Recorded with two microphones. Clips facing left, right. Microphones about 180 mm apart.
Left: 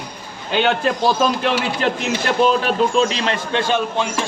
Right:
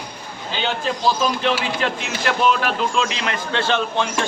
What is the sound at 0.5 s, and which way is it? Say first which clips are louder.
Speech: left 6 dB; 60° left (ahead or behind).